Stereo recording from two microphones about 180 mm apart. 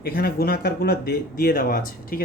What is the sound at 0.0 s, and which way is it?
Speech, 60° left (ahead or behind).